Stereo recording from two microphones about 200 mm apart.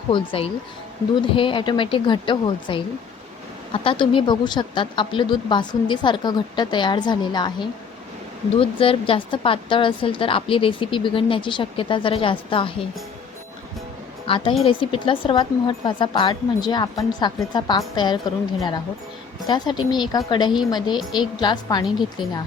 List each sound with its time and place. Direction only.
0.1 s a woman's voice: 25° left (ahead or behind)
14.3 s a woman's voice: 25° left (ahead or behind)
19.5 s a woman's voice: 20° left (ahead or behind)
21.8 s a woman's voice: centre (ahead or behind)